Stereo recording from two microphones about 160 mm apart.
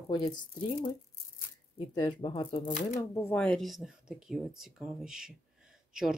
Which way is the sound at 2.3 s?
35° left (ahead or behind).